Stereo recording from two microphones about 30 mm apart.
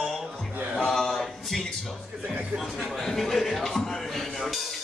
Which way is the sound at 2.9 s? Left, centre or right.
Centre.